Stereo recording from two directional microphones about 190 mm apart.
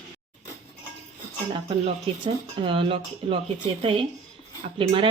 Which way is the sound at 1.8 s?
25° right (ahead or behind).